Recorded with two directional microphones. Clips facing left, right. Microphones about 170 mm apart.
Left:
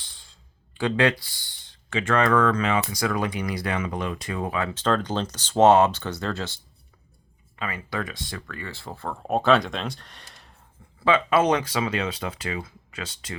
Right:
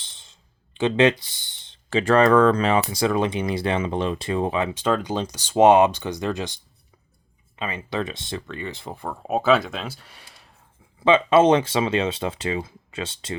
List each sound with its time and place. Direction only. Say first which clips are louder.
0.0 s speech: right 1 dB; 20° right (ahead or behind)
9.2 s speech: right 1 dB; 5° right (ahead or behind)
11.0 s speech: right 5 dB; 25° right (ahead or behind)